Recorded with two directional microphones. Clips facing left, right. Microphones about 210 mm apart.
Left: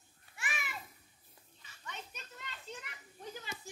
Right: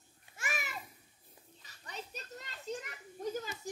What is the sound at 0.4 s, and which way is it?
Babbling, 40° right (ahead or behind).